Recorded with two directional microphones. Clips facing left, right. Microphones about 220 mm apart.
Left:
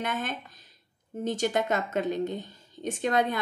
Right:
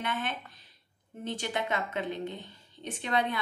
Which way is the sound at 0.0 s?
45° left (ahead or behind).